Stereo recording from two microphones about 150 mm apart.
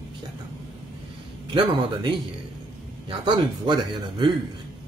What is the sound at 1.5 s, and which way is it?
Speech, 35° right (ahead or behind).